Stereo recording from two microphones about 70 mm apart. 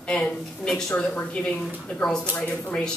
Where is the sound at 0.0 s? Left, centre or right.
Centre.